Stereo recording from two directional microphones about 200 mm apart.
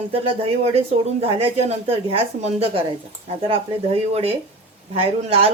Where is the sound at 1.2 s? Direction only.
30° right (ahead or behind).